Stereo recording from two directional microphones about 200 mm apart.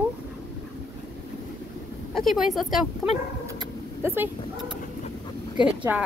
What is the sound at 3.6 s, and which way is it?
Vehicle, 10° right (ahead or behind).